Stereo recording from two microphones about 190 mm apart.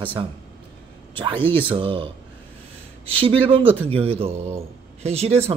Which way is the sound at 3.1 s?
30° right (ahead or behind).